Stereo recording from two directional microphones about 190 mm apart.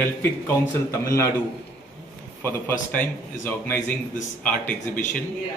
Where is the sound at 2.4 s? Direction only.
10° left (ahead or behind).